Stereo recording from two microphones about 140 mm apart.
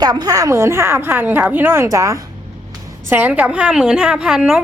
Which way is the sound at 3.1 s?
10° right (ahead or behind).